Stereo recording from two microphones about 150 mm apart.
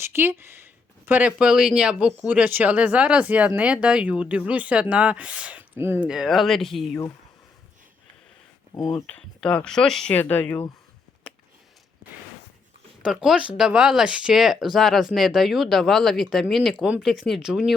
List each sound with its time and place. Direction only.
0.0 s speech: 15° right (ahead or behind)
6.1 s speech: centre (ahead or behind)
8.7 s speech: 25° left (ahead or behind)
9.0 s speech: 10° left (ahead or behind)
13.1 s speech: 5° right (ahead or behind)